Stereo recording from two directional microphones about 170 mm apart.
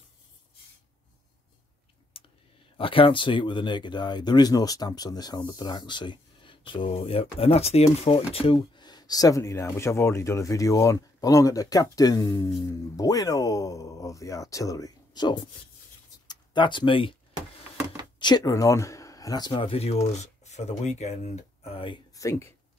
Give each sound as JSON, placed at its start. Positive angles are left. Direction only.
{"t": 2.1, "sound": "clicking", "side_deg": 35}
{"t": 2.8, "sound": "speech", "side_deg": 30}
{"t": 18.2, "sound": "speech", "side_deg": 20}
{"t": 22.2, "sound": "speech", "side_deg": 15}